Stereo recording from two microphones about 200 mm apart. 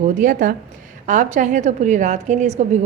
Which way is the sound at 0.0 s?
40° right (ahead or behind).